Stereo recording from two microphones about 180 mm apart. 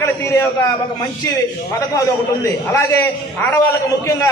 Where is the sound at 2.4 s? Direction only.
15° left (ahead or behind).